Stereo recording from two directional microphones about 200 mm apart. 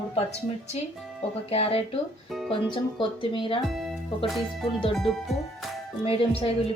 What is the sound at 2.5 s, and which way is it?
Speech, 25° left (ahead or behind).